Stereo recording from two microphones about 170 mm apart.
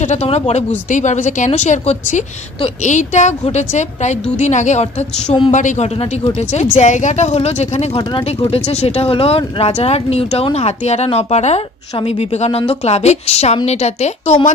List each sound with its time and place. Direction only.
0.0 s speech: 40° left (ahead or behind)